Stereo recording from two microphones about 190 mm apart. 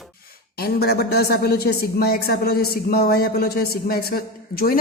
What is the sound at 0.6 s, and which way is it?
A woman's voice, 55° left (ahead or behind).